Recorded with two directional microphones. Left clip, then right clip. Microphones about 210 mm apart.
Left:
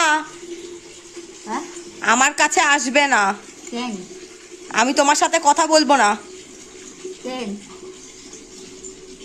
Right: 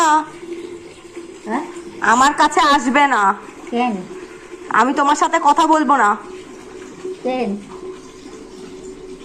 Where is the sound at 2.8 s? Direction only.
35° left (ahead or behind).